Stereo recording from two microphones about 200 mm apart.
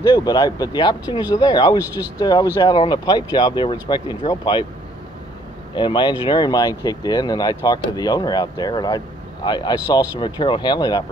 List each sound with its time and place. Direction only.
0.0 s speech: 20° left (ahead or behind)
1.8 s speech: 10° right (ahead or behind)
2.1 s speech: 20° left (ahead or behind)
5.8 s speech: 25° left (ahead or behind)